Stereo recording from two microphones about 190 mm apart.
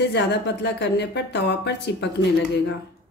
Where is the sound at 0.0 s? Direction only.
65° left (ahead or behind).